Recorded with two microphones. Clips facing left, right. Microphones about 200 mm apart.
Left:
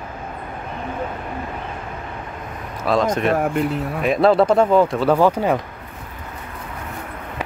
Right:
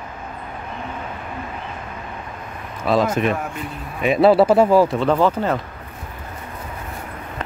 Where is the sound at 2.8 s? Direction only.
5° right (ahead or behind).